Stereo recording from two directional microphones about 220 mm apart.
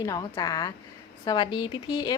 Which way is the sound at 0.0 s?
15° left (ahead or behind).